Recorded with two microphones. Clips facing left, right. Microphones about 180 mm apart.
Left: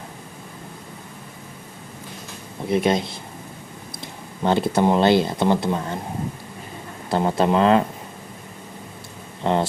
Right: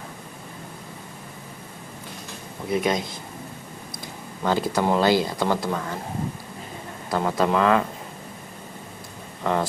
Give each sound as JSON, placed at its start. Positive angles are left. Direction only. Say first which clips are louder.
{"t": 2.7, "sound": "speech", "louder": "left 3 dB", "side_deg": 25}
{"t": 4.4, "sound": "speech", "louder": "left 4 dB", "side_deg": 25}
{"t": 7.1, "sound": "speech", "louder": "left 3 dB", "side_deg": 25}
{"t": 9.4, "sound": "speech", "louder": "left 3 dB", "side_deg": 25}